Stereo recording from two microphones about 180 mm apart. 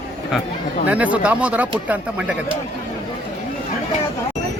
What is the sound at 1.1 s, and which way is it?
A man's voice, 5° right (ahead or behind).